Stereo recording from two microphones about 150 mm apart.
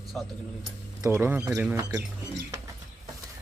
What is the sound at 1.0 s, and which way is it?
Speech, 20° right (ahead or behind).